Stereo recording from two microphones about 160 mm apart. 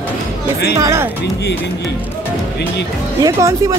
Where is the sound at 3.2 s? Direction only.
20° right (ahead or behind).